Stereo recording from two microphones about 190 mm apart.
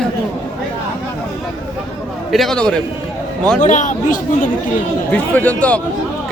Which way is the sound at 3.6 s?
40° left (ahead or behind).